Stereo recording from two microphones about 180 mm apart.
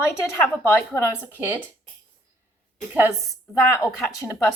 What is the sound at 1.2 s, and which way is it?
Speech, 10° right (ahead or behind).